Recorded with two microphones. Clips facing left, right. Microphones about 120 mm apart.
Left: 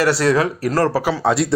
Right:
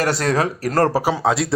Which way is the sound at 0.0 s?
45° right (ahead or behind).